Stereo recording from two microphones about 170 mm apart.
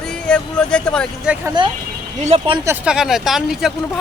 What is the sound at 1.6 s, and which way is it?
Speech, 25° right (ahead or behind).